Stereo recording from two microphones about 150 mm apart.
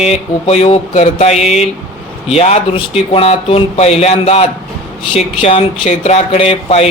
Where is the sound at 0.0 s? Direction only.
45° left (ahead or behind).